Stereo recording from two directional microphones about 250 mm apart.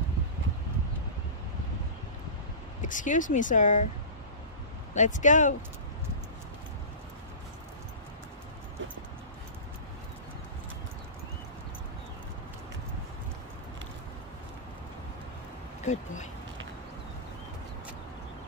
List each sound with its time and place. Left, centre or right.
2.8 s speech: left
4.9 s speech: left
15.8 s a sound: left